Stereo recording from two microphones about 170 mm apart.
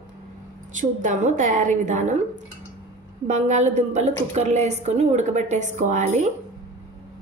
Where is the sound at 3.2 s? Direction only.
40° right (ahead or behind).